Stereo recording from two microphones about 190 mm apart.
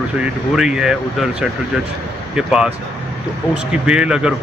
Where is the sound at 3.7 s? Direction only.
5° right (ahead or behind).